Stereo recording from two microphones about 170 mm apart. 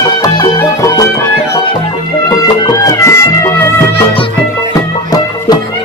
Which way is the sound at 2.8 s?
15° left (ahead or behind).